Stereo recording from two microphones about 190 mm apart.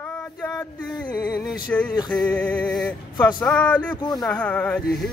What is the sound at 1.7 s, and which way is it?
Speech, 10° left (ahead or behind).